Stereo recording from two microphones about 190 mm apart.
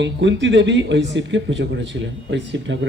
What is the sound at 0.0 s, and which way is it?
Speech, 70° right (ahead or behind).